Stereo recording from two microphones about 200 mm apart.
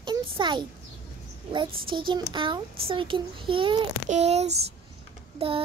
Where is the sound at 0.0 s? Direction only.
25° right (ahead or behind).